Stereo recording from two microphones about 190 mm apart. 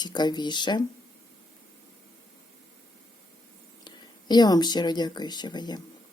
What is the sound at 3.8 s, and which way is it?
Speech, 20° left (ahead or behind).